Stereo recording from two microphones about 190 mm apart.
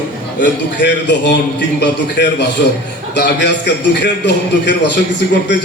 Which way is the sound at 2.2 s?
65° left (ahead or behind).